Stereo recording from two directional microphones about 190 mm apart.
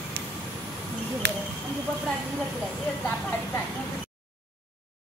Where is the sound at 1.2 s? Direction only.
65° right (ahead or behind).